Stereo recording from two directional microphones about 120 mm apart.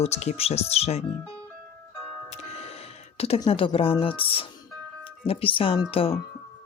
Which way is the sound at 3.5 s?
50° left (ahead or behind).